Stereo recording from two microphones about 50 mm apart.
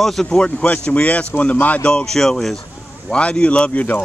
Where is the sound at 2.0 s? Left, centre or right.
Centre.